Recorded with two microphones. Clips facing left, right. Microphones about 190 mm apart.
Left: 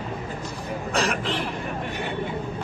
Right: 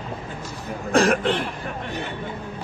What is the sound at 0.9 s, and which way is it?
Speech, 50° right (ahead or behind).